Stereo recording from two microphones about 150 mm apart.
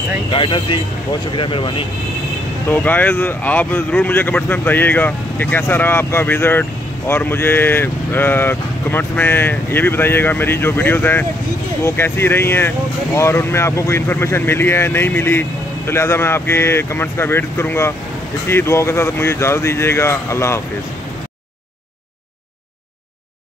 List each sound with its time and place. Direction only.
0.3 s speech: 35° left (ahead or behind)
2.7 s speech: 10° left (ahead or behind)